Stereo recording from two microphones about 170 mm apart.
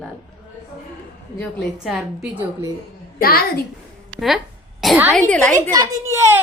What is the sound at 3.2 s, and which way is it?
Speech, 60° left (ahead or behind).